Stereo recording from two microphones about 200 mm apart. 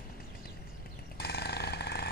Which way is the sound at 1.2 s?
55° left (ahead or behind).